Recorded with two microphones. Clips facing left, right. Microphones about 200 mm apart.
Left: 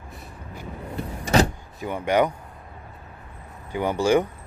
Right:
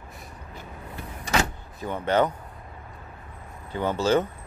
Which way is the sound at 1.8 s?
15° left (ahead or behind).